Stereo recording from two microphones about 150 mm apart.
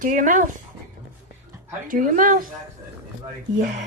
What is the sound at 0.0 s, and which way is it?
Speech, 65° right (ahead or behind).